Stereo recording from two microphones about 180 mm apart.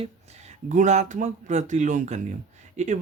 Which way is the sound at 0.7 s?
40° right (ahead or behind).